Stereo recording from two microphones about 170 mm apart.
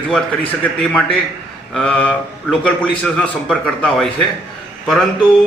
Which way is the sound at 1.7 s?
5° left (ahead or behind).